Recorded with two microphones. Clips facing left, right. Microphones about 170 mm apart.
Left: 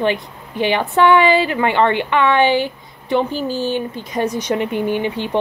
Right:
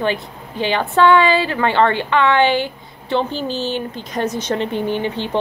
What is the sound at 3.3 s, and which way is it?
A woman's voice, 5° left (ahead or behind).